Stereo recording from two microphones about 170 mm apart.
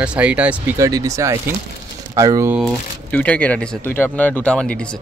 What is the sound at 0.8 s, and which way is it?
Speech, 20° right (ahead or behind).